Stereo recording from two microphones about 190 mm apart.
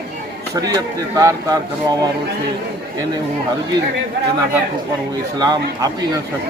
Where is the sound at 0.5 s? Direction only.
20° right (ahead or behind).